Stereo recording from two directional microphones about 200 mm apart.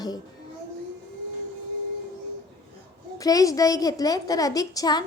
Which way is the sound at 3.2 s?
20° left (ahead or behind).